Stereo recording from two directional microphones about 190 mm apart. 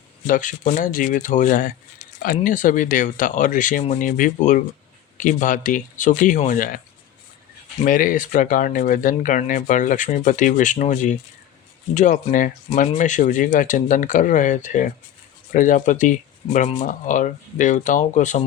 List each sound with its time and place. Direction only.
0.3 s speech: 40° left (ahead or behind)
7.9 s speech: 45° left (ahead or behind)